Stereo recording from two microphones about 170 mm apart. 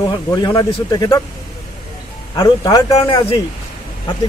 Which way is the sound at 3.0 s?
30° left (ahead or behind).